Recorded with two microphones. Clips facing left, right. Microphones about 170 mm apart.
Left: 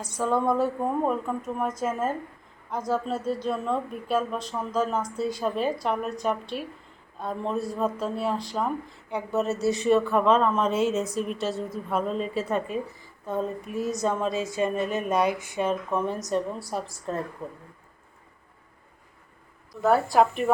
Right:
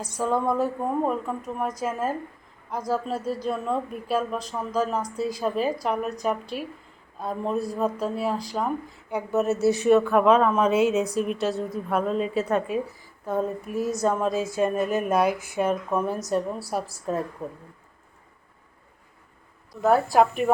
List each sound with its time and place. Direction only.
0.1 s speech: centre (ahead or behind)
19.8 s speech: centre (ahead or behind)